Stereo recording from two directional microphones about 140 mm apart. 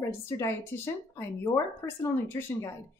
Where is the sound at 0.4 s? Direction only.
15° left (ahead or behind).